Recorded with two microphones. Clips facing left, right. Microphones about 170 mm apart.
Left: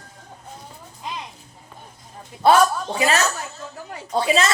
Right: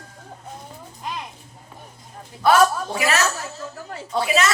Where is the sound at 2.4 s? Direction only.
30° left (ahead or behind).